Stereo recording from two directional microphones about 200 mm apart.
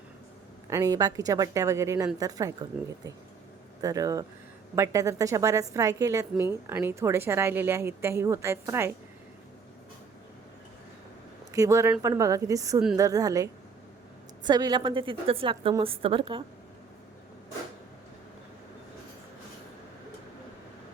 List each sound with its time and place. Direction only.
0.7 s a woman's voice: 20° right (ahead or behind)
3.8 s a woman's voice: 15° right (ahead or behind)
11.5 s a woman's voice: 15° right (ahead or behind)